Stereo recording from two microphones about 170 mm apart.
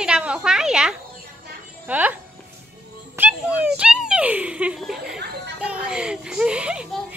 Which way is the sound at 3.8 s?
5° right (ahead or behind).